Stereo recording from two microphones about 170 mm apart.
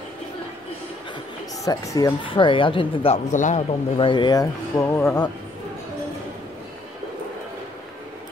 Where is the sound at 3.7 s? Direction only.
30° left (ahead or behind); by 5.3 s 15° left (ahead or behind).